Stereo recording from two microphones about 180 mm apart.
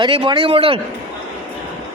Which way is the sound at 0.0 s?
25° right (ahead or behind).